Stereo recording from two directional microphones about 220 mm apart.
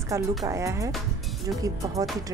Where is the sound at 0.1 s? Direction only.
10° right (ahead or behind).